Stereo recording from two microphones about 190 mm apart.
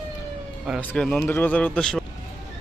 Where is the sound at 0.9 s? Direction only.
5° left (ahead or behind).